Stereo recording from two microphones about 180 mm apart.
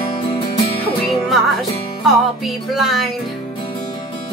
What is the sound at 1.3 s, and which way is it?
Music, centre (ahead or behind).